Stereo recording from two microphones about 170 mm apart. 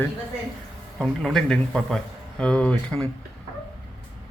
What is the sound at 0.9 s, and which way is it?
A man's voice, centre (ahead or behind).